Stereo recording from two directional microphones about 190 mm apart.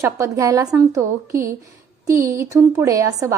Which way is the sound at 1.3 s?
50° right (ahead or behind).